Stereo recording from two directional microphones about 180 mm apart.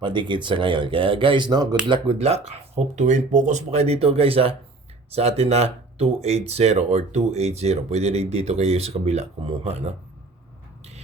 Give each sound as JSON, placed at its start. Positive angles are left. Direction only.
{"t": 0.0, "sound": "speech", "side_deg": -25}